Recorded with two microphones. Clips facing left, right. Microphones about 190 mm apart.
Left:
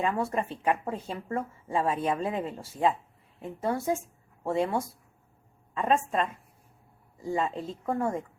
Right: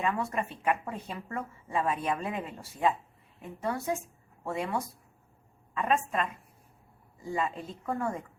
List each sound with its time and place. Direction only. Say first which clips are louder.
0.0 s speech: left 3 dB; 30° left (ahead or behind)